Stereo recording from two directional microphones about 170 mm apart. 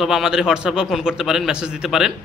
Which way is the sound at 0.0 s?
Centre (ahead or behind).